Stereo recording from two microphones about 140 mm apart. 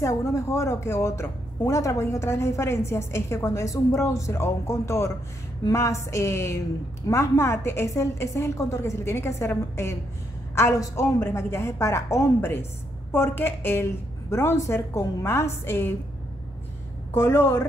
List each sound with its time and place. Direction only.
0.0 s a woman's voice: 20° left (ahead or behind)
17.1 s a woman's voice: 15° left (ahead or behind)